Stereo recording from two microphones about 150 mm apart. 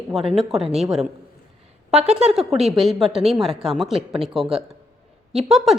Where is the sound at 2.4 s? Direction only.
Centre (ahead or behind).